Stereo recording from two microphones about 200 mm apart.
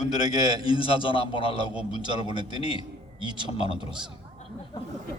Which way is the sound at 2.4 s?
20° right (ahead or behind).